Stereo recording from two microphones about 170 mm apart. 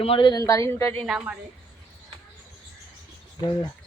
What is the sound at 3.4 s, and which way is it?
Speech, 25° left (ahead or behind).